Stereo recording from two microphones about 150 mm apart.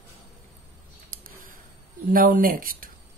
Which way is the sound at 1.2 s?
65° right (ahead or behind).